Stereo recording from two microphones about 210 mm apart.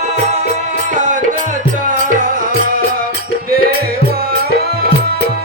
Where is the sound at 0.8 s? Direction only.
35° right (ahead or behind).